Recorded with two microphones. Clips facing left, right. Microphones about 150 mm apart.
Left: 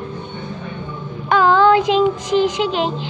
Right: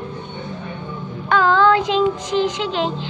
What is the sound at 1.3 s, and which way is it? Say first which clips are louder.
Child singing: left 2 dB; 10° left (ahead or behind).